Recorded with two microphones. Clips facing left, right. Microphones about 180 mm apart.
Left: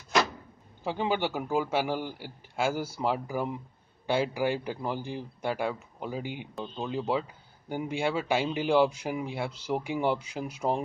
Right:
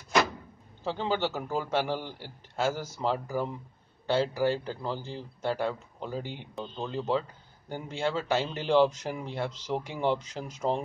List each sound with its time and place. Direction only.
0.8 s speech: 10° left (ahead or behind)